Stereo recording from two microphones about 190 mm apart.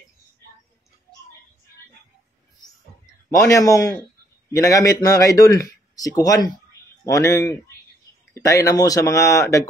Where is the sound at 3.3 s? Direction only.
15° left (ahead or behind).